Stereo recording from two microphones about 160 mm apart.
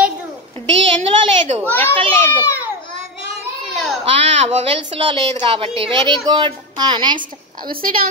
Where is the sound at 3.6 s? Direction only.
Centre (ahead or behind).